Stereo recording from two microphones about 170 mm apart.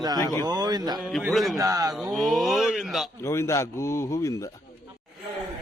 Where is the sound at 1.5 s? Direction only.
20° right (ahead or behind).